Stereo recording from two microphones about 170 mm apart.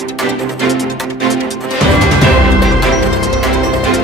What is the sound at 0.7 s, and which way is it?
Music, centre (ahead or behind).